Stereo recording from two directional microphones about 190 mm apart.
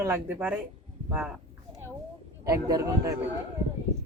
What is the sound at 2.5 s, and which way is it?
Speech, 15° right (ahead or behind).